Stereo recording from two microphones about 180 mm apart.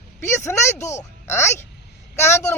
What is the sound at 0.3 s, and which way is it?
A man's voice, 15° left (ahead or behind).